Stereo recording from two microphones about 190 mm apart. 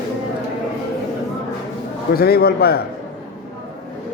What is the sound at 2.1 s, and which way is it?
Speech, 55° left (ahead or behind).